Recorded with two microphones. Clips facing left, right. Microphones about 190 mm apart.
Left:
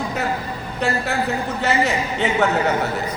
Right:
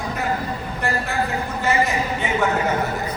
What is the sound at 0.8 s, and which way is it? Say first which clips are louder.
A man's voice: left 3 dB; 70° left (ahead or behind).